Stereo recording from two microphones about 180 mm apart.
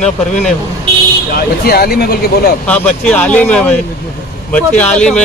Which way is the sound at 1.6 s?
60° left (ahead or behind).